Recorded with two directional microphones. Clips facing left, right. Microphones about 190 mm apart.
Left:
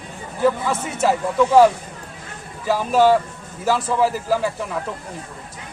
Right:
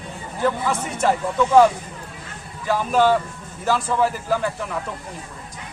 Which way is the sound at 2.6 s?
5° left (ahead or behind).